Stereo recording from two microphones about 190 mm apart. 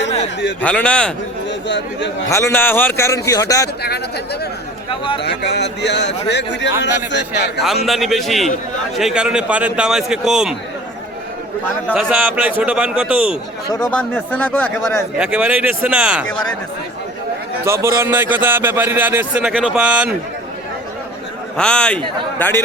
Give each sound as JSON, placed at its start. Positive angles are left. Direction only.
{"t": 0.6, "sound": "a man's voice", "side_deg": 5}
{"t": 1.5, "sound": "speech", "side_deg": 65}
{"t": 2.2, "sound": "speech", "side_deg": 15}
{"t": 5.2, "sound": "a man's voice", "side_deg": 60}
{"t": 7.9, "sound": "a man's voice", "side_deg": 0}
{"t": 11.9, "sound": "a man's voice", "side_deg": -5}
{"t": 13.7, "sound": "speech", "side_deg": 15}
{"t": 15.2, "sound": "a man's voice", "side_deg": -5}
{"t": 17.6, "sound": "a man's voice", "side_deg": -15}
{"t": 21.6, "sound": "a man's voice", "side_deg": 5}